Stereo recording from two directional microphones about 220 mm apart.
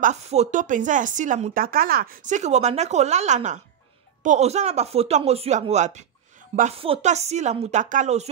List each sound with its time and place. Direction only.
0.0 s speech: 30° right (ahead or behind)